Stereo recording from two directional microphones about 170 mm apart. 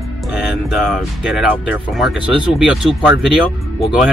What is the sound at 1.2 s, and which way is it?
Speech, 5° right (ahead or behind).